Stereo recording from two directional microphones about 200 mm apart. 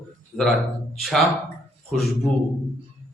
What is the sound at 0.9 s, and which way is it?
A man's voice, centre (ahead or behind).